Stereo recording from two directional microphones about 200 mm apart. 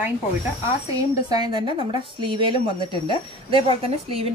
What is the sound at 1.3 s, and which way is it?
A woman's voice, 20° right (ahead or behind).